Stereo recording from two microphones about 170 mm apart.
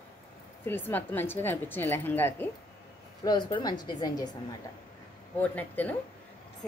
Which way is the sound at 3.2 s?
25° left (ahead or behind).